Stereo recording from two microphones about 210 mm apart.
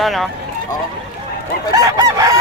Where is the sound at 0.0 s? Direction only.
Centre (ahead or behind).